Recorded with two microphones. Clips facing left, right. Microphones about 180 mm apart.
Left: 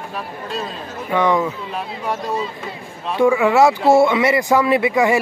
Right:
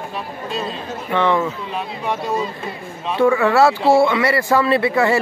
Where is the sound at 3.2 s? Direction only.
15° left (ahead or behind).